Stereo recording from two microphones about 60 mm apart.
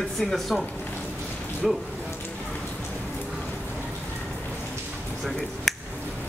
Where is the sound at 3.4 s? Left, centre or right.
Left.